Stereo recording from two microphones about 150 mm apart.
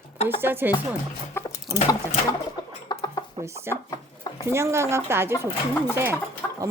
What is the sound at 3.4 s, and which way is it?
A woman's voice, 20° right (ahead or behind).